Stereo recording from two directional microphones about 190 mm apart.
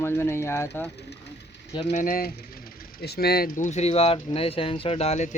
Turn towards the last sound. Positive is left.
turn(degrees=35)  # may be behind; listen again after turning